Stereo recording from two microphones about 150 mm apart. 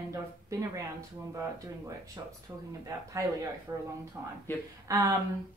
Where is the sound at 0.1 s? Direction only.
20° right (ahead or behind).